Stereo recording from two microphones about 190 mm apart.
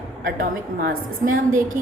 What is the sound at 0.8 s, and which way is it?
Speech, 45° right (ahead or behind).